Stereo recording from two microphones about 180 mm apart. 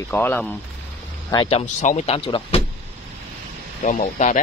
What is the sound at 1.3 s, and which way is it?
Speech, 30° left (ahead or behind).